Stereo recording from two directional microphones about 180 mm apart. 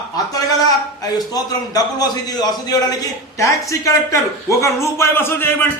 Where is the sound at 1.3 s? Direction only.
20° left (ahead or behind).